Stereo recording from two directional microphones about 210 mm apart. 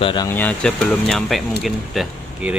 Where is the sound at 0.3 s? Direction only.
5° left (ahead or behind).